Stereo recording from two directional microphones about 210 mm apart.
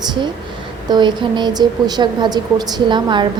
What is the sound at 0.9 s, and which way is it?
A woman's voice, 20° right (ahead or behind).